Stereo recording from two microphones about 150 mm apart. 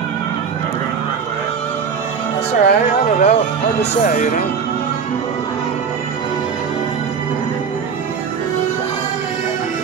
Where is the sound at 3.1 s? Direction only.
50° left (ahead or behind).